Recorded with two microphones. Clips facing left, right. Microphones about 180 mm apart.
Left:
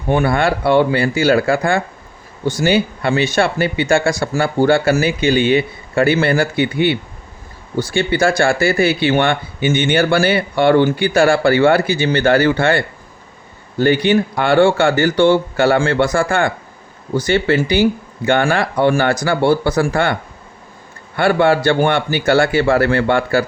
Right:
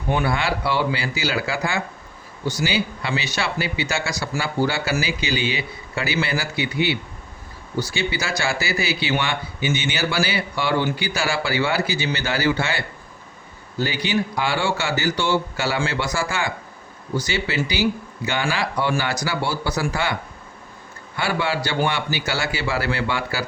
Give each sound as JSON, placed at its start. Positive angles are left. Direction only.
{"t": 0.1, "sound": "speech", "side_deg": 55}
{"t": 21.2, "sound": "speech", "side_deg": 55}